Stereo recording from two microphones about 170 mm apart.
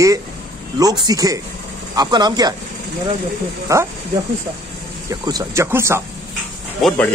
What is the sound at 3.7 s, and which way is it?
Speech, 20° right (ahead or behind).